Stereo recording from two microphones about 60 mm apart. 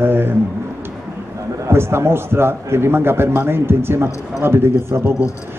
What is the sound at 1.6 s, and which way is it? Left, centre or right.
A man's voice, right.